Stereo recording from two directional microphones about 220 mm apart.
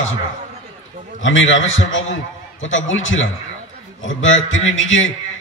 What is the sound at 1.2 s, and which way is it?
A man's voice, 60° left (ahead or behind).